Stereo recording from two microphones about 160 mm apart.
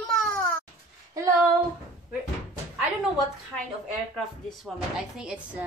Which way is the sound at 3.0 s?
Centre (ahead or behind).